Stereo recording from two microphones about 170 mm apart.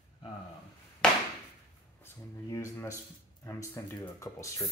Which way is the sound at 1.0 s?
5° left (ahead or behind).